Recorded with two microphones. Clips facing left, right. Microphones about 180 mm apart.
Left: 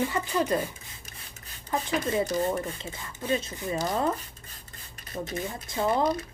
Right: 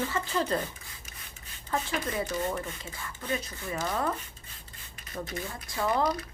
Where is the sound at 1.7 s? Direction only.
15° left (ahead or behind).